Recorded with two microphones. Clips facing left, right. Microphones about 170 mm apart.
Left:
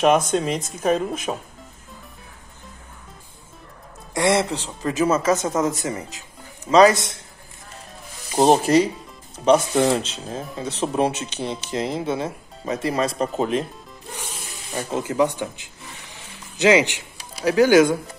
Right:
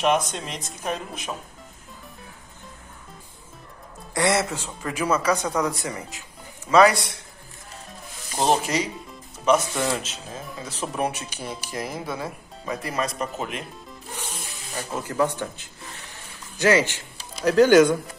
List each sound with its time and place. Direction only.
0.8 s a woman's voice: 50° left (ahead or behind)
4.1 s speech: 20° left (ahead or behind)
5.2 s a woman's voice: 45° left (ahead or behind)
5.9 s speech: 20° left (ahead or behind)
8.4 s speech: 35° left (ahead or behind)
14.7 s speech: 30° left (ahead or behind); by 17.9 s 10° left (ahead or behind)